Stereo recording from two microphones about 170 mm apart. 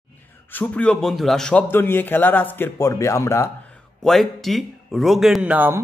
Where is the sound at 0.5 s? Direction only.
10° left (ahead or behind).